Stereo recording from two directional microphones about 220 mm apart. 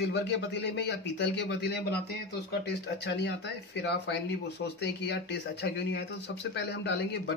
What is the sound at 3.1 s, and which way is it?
A man's voice, 50° left (ahead or behind).